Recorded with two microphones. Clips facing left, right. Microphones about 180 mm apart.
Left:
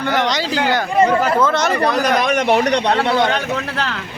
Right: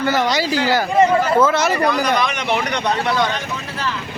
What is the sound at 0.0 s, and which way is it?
Speech, 5° right (ahead or behind).